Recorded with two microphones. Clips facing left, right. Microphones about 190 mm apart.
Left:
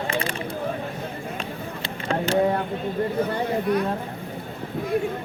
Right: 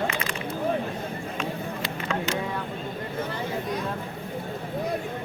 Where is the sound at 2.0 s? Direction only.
30° left (ahead or behind).